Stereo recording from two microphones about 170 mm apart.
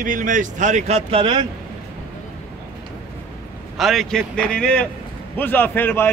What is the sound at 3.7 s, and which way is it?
A man's voice, centre (ahead or behind).